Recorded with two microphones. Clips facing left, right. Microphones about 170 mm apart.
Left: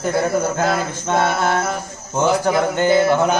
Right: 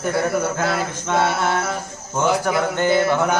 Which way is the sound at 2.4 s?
25° left (ahead or behind).